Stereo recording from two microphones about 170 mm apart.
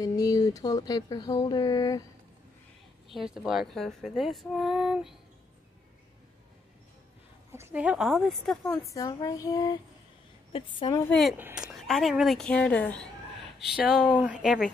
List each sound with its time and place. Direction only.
0.0 s speech: 20° left (ahead or behind)
3.1 s speech: 5° right (ahead or behind)
7.5 s speech: 10° right (ahead or behind)
8.9 s speech: 20° left (ahead or behind)
11.1 s speech: centre (ahead or behind)
13.7 s speech: 5° right (ahead or behind)